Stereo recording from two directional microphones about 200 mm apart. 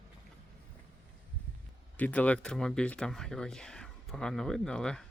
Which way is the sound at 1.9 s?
10° left (ahead or behind).